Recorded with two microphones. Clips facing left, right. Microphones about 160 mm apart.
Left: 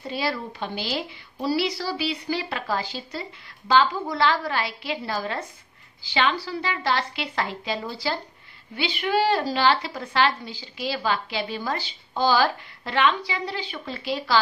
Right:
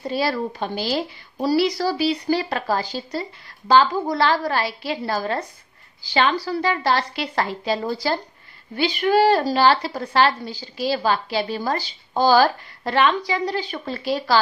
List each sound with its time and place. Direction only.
0.1 s a woman's voice: 40° right (ahead or behind)